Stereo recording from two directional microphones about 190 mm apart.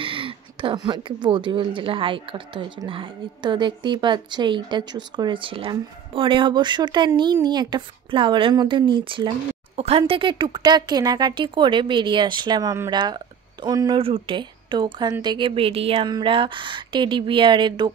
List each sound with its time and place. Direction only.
0.0 s speech: 25° right (ahead or behind)